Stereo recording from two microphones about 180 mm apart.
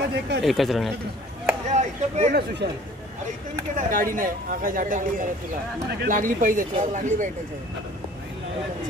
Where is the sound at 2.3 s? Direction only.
65° right (ahead or behind).